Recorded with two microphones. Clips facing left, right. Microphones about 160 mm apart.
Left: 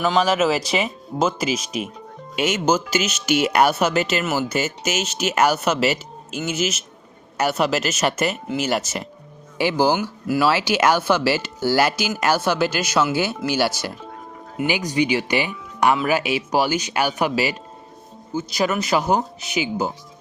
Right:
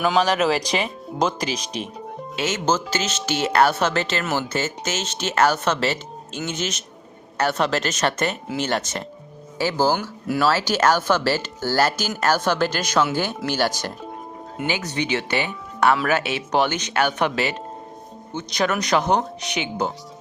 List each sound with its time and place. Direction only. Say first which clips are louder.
0.0 s speech: left 1 dB; centre (ahead or behind)